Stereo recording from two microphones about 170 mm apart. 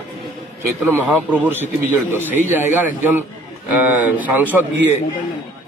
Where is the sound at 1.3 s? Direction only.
10° right (ahead or behind).